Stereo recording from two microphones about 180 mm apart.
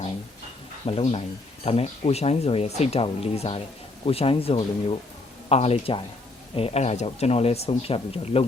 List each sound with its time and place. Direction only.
0.9 s speech: 30° left (ahead or behind)